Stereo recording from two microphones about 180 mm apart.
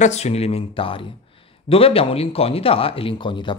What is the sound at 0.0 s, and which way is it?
Speech, 40° left (ahead or behind).